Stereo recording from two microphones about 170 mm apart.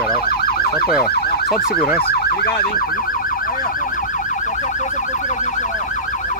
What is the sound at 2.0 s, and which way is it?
Emergency vehicle, 65° left (ahead or behind).